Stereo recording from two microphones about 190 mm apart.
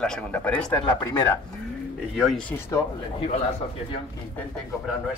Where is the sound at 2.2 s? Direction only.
Centre (ahead or behind).